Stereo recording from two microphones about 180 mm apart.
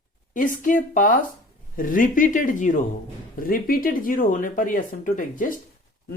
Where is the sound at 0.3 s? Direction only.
45° left (ahead or behind).